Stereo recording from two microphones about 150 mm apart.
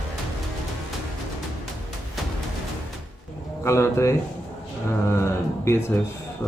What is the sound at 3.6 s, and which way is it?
Speech, 20° left (ahead or behind).